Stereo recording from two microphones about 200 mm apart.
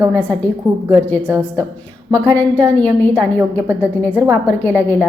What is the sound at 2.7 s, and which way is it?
Speech, 10° left (ahead or behind).